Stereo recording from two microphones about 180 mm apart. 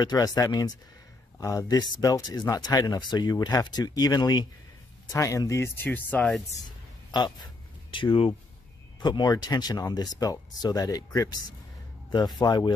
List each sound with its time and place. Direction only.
0.0 s speech: 20° left (ahead or behind); by 6.4 s 5° left (ahead or behind)
7.1 s speech: 25° left (ahead or behind)